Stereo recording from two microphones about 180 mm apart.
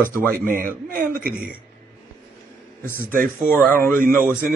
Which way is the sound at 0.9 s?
55° right (ahead or behind).